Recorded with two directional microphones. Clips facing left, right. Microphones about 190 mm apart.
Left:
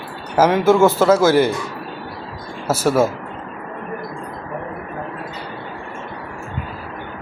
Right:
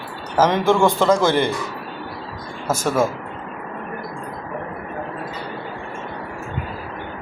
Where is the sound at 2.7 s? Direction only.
10° left (ahead or behind).